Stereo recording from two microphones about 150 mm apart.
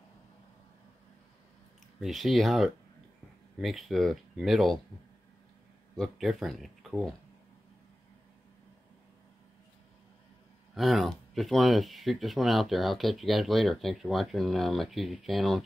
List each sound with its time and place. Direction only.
2.0 s speech: centre (ahead or behind)
5.9 s speech: centre (ahead or behind)
10.7 s speech: centre (ahead or behind)